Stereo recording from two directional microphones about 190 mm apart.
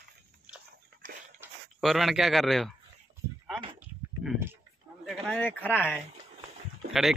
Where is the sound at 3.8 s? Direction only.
10° right (ahead or behind).